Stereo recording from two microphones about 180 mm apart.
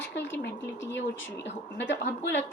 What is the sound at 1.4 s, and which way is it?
Speech, 80° left.